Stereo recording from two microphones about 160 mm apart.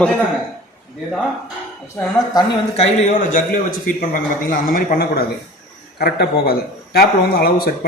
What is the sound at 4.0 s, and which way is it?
A man's voice, 60° left (ahead or behind).